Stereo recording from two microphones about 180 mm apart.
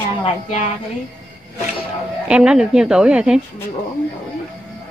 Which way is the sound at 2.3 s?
5° right (ahead or behind).